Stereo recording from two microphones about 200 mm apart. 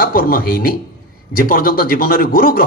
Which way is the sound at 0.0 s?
45° left (ahead or behind).